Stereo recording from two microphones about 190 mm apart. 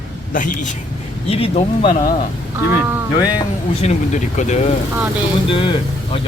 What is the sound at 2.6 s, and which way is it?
Speech, 10° right (ahead or behind).